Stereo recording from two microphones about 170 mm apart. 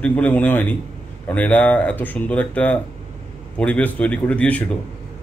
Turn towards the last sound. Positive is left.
turn(degrees=10)  # may be behind; listen again after turning